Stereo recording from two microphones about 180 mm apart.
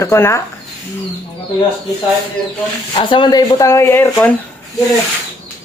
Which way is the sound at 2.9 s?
25° left (ahead or behind).